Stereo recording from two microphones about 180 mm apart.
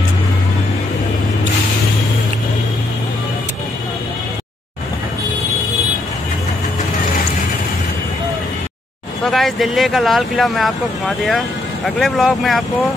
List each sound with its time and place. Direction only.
9.2 s speech: centre (ahead or behind)